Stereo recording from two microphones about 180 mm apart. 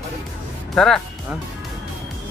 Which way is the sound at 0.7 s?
Centre (ahead or behind).